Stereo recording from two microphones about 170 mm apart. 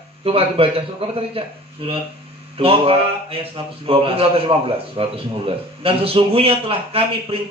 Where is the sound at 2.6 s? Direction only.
35° right (ahead or behind).